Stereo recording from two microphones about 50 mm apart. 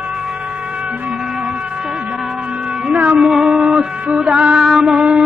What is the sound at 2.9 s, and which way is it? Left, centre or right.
Music, right.